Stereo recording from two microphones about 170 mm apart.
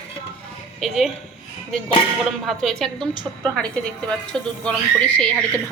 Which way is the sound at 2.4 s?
Centre (ahead or behind).